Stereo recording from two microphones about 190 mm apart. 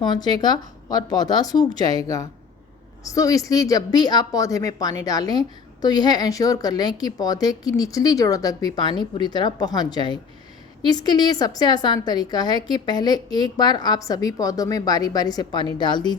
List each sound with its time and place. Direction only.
0.0 s a woman's voice: 20° left (ahead or behind)
3.0 s a woman's voice: 20° left (ahead or behind)